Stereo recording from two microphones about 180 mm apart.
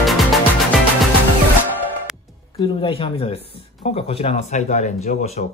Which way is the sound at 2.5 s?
30° left (ahead or behind).